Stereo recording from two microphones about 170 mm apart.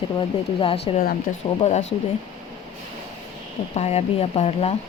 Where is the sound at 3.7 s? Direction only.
40° left (ahead or behind).